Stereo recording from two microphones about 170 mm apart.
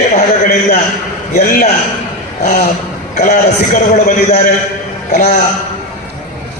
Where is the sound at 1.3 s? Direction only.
45° left (ahead or behind).